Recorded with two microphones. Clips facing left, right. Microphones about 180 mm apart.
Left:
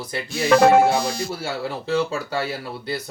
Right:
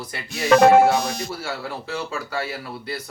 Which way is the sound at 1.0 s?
20° right (ahead or behind).